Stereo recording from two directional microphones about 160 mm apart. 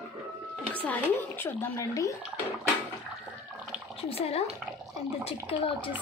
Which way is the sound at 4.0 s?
40° left (ahead or behind).